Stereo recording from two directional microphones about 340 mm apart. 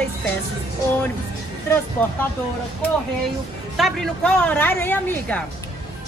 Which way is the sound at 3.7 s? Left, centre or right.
Centre.